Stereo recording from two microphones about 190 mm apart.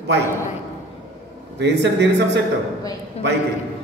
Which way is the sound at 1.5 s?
65° right (ahead or behind).